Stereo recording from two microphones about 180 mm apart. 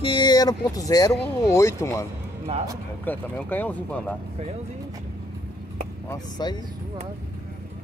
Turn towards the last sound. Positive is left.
turn(degrees=25)  # may be behind; listen again after turning